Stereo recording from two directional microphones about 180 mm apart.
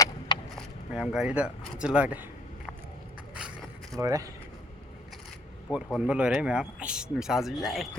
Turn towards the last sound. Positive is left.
turn(degrees=0)  # may be behind; listen again after turning